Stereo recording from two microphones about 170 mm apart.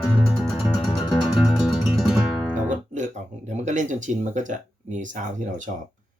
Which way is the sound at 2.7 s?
45° right (ahead or behind).